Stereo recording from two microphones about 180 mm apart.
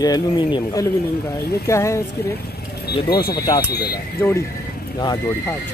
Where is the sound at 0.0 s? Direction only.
25° left (ahead or behind).